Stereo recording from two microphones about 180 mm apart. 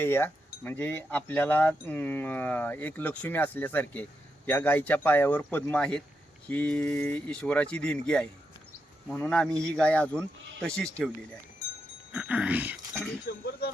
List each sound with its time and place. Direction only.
0.0 s speech: 10° left (ahead or behind)
12.1 s speech: 5° right (ahead or behind)
13.2 s speech: 60° left (ahead or behind)